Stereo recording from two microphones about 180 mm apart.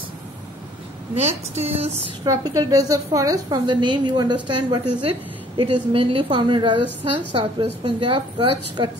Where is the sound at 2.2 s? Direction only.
20° right (ahead or behind).